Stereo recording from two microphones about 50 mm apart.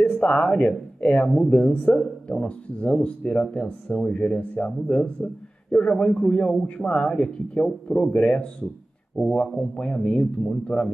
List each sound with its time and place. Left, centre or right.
0.2 s speech: left